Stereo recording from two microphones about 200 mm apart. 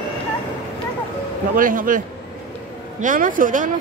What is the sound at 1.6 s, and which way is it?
Speech, 45° right (ahead or behind).